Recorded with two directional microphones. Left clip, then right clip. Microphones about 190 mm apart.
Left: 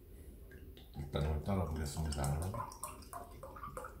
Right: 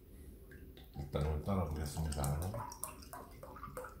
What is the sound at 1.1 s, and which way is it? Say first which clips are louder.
Speech: even; 25° right (ahead or behind).